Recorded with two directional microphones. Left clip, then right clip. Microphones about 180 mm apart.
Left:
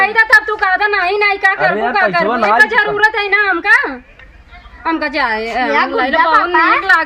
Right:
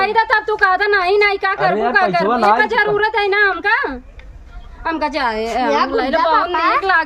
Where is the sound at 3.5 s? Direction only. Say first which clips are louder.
Left 5 dB; 40° right (ahead or behind).